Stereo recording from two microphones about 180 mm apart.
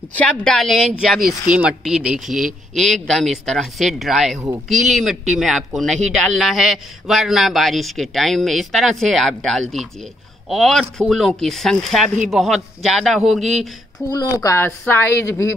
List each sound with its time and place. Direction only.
0.1 s a man's voice: 5° left (ahead or behind)
14.1 s a woman's voice: 20° left (ahead or behind)